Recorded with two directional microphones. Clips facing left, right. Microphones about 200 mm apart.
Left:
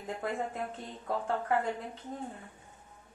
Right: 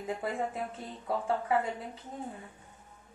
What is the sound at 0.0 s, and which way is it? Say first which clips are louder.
A woman's voice: right 2 dB; 5° right (ahead or behind).